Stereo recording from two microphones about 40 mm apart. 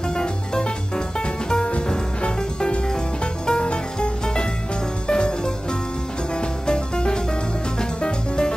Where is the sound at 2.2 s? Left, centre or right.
Left.